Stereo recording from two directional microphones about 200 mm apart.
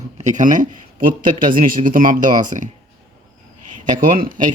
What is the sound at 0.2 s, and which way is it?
Speech, 40° right (ahead or behind).